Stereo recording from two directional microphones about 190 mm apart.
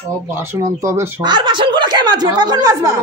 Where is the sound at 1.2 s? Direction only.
25° right (ahead or behind).